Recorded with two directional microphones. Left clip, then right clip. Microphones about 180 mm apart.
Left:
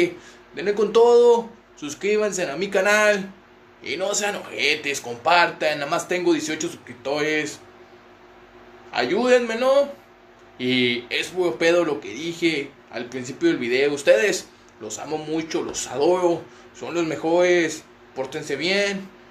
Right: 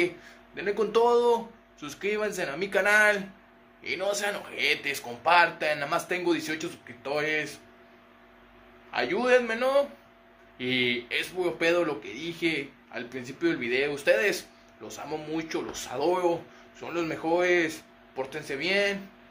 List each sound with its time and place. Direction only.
0.6 s speech: centre (ahead or behind)
8.9 s speech: centre (ahead or behind)